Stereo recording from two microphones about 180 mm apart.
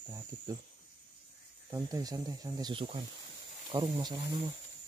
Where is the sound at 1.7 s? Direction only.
20° right (ahead or behind).